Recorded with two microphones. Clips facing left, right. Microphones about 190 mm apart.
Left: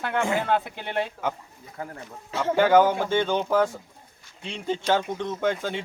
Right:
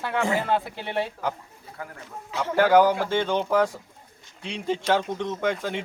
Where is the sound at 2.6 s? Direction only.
Centre (ahead or behind).